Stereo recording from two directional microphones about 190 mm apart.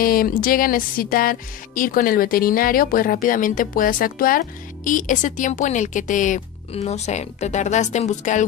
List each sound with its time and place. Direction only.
0.0 s speech: 50° left (ahead or behind)